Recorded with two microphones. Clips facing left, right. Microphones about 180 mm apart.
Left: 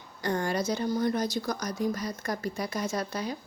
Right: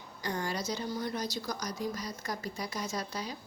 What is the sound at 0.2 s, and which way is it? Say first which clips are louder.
A woman's voice: left 6 dB; 55° left (ahead or behind).